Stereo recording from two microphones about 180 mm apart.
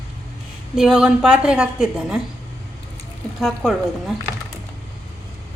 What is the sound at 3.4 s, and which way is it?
Speech, centre (ahead or behind).